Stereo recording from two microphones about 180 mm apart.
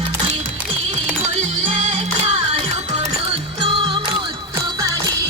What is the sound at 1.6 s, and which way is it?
Music, 40° right (ahead or behind).